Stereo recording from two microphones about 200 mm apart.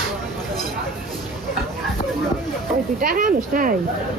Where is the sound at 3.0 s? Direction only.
45° right (ahead or behind).